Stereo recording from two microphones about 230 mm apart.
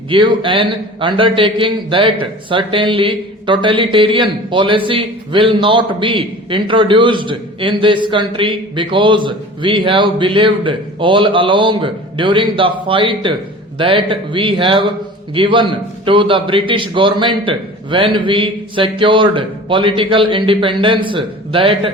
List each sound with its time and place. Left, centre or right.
0.1 s a man's voice: right